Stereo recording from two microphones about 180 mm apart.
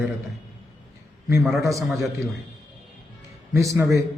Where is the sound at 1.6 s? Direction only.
15° right (ahead or behind).